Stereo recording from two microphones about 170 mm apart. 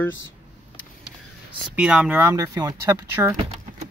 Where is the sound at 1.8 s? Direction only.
5° right (ahead or behind).